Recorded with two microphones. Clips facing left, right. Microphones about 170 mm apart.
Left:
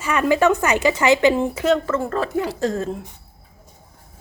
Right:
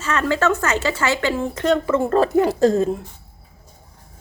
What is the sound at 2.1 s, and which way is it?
Speech, 35° right (ahead or behind).